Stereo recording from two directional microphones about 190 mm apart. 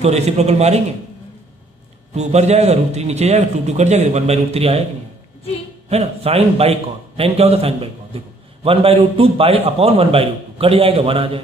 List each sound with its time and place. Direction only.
0.0 s a man's voice: 35° right (ahead or behind)
2.1 s a man's voice: 35° right (ahead or behind)
5.9 s a man's voice: 30° right (ahead or behind)